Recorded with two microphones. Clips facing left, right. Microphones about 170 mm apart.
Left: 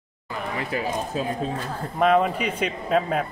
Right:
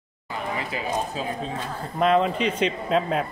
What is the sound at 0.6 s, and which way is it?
Speech, 45° left (ahead or behind).